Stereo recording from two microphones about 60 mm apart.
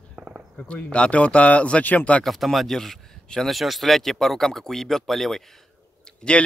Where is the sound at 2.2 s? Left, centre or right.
Centre.